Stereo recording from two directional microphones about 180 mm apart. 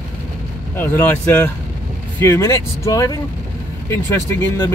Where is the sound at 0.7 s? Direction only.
10° left (ahead or behind).